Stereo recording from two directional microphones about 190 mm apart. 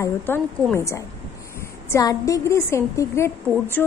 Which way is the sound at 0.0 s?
15° left (ahead or behind).